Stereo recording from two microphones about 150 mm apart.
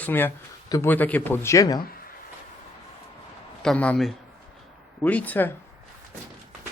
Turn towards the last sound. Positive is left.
turn(degrees=10)  # may be behind; listen again after turning